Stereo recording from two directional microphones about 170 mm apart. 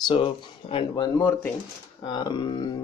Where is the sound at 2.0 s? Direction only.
25° left (ahead or behind).